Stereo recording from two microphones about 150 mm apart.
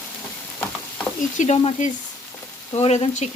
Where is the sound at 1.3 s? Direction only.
50° left (ahead or behind).